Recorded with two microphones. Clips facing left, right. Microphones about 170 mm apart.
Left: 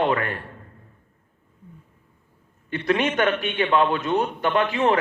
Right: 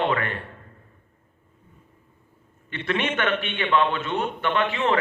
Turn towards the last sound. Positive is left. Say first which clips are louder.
# left 3 dB
turn(degrees=40)  # may be behind; listen again after turning